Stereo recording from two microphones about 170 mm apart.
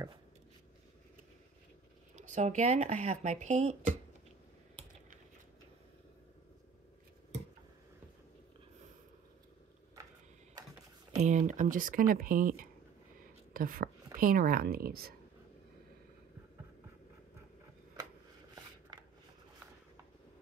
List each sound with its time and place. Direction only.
2.1 s speech: 45° right (ahead or behind)
11.2 s speech: 45° right (ahead or behind); by 15.1 s 65° right (ahead or behind)